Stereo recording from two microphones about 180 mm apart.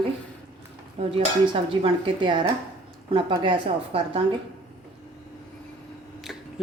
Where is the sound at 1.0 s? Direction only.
30° right (ahead or behind).